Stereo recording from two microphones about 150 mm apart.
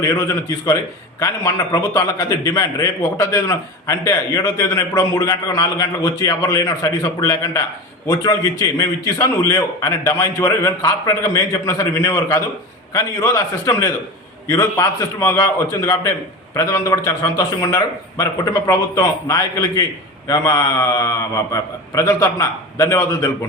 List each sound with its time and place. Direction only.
1.2 s a man's voice: 25° left (ahead or behind)